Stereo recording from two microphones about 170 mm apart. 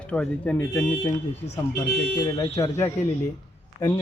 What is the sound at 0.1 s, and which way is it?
Speech, 5° left (ahead or behind).